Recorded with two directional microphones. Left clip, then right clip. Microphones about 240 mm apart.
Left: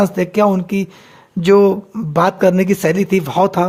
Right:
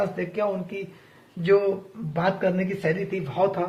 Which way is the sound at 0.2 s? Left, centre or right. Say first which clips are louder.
Left 12 dB; left.